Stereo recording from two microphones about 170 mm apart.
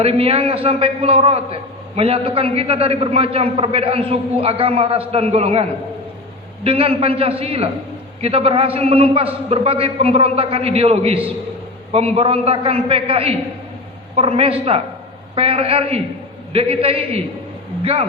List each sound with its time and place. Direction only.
0.0 s a man's voice: 35° right (ahead or behind)
6.7 s a man's voice: 35° right (ahead or behind)